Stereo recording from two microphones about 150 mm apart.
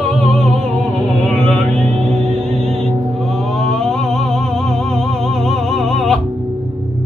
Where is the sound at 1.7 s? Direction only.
45° right (ahead or behind).